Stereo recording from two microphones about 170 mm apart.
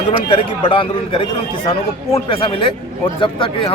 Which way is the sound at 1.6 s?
20° left (ahead or behind).